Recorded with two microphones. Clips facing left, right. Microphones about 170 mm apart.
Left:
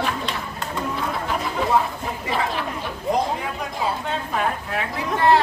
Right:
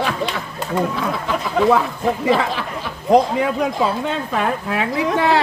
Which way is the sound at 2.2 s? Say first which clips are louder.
Right 3 dB; 90° right.